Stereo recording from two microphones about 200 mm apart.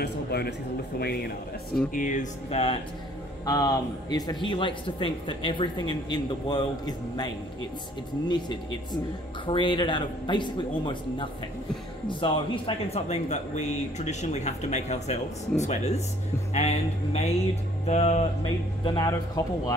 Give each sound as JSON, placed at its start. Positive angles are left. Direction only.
{"t": 0.0, "sound": "a man's voice", "side_deg": 55}
{"t": 2.0, "sound": "speech", "side_deg": 40}
{"t": 3.4, "sound": "speech", "side_deg": 15}
{"t": 18.9, "sound": "speech", "side_deg": 20}